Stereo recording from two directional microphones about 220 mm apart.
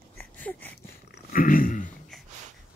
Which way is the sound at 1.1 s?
40° left (ahead or behind).